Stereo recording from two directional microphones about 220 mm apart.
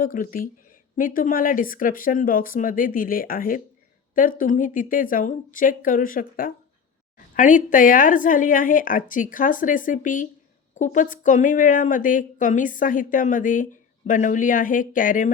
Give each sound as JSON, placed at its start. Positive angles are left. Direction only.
{"t": 0.0, "sound": "a woman's voice", "side_deg": 40}